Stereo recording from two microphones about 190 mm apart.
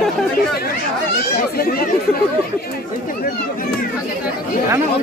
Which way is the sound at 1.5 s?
50° left (ahead or behind).